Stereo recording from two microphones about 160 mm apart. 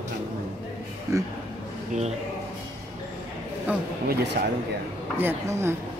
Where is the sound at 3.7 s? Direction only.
10° right (ahead or behind).